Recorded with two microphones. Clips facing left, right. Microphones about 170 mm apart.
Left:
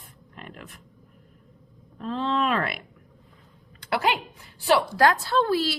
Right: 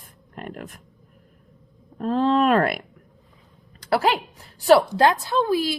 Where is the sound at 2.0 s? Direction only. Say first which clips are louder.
Right 7 dB; 50° right (ahead or behind).